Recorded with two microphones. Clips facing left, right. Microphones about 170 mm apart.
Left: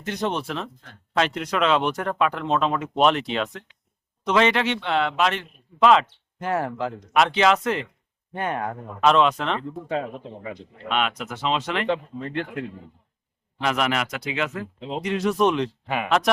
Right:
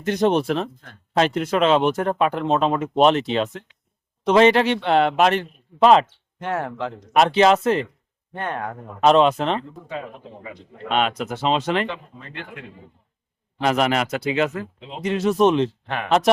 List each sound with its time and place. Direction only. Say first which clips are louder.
0.0 s a man's voice: right 7 dB; 40° right (ahead or behind)
0.4 s speech: right 7 dB; 55° right (ahead or behind)
1.2 s a man's voice: right 4 dB; 30° right (ahead or behind)
6.4 s speech: left 1 dB; centre (ahead or behind)
7.1 s a man's voice: right 4 dB; 40° right (ahead or behind)
8.3 s speech: left 1 dB; 5° left (ahead or behind)
9.0 s a man's voice: right 3 dB; 35° right (ahead or behind)
10.8 s a man's voice: right 4 dB; 35° right (ahead or behind)
11.9 s speech: left 8 dB; 35° left (ahead or behind)
13.6 s a man's voice: right 4 dB; 35° right (ahead or behind)
14.8 s speech: left 6 dB; 35° left (ahead or behind)
15.0 s speech: right 4 dB; 30° right (ahead or behind)
15.9 s speech: even; 5° left (ahead or behind)